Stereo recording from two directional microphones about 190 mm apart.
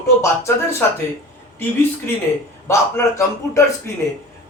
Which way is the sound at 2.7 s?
15° left (ahead or behind).